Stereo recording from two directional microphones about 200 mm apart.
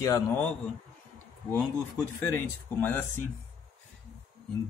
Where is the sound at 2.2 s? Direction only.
10° left (ahead or behind).